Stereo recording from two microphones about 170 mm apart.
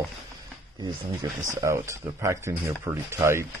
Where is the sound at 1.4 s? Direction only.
15° right (ahead or behind).